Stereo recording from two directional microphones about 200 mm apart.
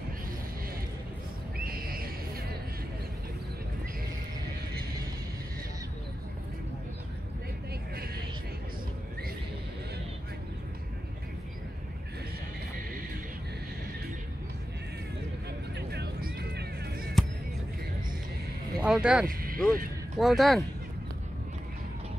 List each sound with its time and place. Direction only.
1.6 s neigh: 45° right (ahead or behind)
15.7 s music: 55° right (ahead or behind)
17.2 s music: centre (ahead or behind)
18.8 s speech: 5° right (ahead or behind)
19.2 s a sound: 45° right (ahead or behind)
20.2 s speech: centre (ahead or behind)